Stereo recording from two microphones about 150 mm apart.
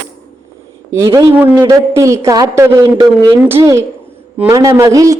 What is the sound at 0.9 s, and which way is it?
A woman's voice, 20° right (ahead or behind).